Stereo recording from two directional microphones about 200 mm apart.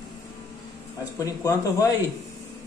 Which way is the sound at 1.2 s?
15° left (ahead or behind).